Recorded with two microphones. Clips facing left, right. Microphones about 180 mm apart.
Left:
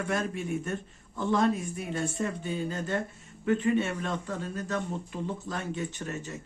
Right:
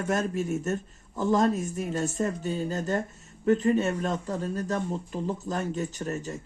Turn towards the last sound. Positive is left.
turn(degrees=-40)  # may be behind; listen again after turning